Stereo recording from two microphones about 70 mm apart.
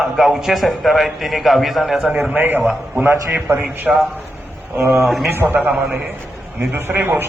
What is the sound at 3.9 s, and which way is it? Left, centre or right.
Speech, centre.